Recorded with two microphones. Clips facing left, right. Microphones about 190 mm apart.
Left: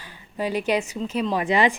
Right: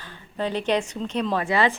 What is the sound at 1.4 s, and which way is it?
Speech, 15° left (ahead or behind).